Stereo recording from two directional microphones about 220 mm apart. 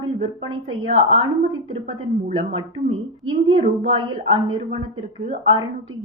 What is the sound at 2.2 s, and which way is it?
A woman's voice, 25° right (ahead or behind).